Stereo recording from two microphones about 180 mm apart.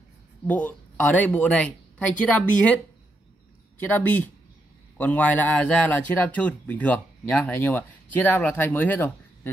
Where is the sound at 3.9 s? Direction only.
10° left (ahead or behind).